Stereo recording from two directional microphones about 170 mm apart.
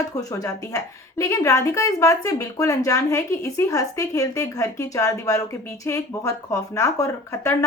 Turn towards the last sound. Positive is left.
turn(degrees=20)  # may be behind; listen again after turning